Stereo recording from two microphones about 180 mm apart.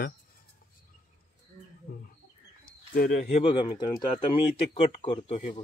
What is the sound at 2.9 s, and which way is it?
Speech, 45° left (ahead or behind).